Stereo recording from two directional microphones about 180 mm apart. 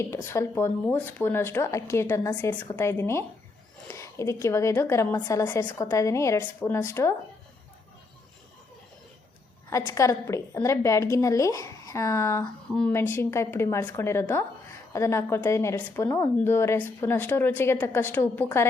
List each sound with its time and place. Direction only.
0.0 s a woman's voice: 15° left (ahead or behind)
9.6 s a woman's voice: 15° left (ahead or behind)